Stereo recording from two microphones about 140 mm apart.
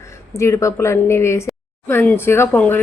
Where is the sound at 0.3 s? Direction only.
20° left (ahead or behind).